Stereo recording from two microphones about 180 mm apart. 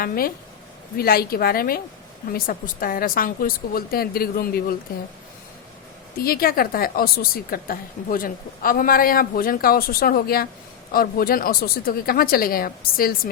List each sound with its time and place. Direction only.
0.0 s a woman's voice: 55° left (ahead or behind)
6.1 s a woman's voice: 55° left (ahead or behind)